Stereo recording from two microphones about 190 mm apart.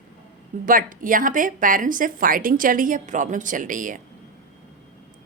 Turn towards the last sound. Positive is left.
turn(degrees=-45)  # may be behind; listen again after turning